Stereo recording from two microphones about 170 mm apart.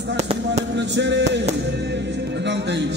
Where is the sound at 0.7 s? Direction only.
90° right.